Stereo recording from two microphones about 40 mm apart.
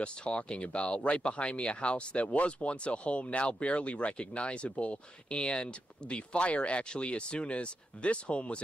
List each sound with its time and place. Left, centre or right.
0.0 s speech: left